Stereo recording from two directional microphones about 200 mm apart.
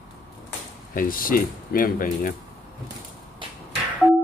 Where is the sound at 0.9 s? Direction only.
45° left (ahead or behind).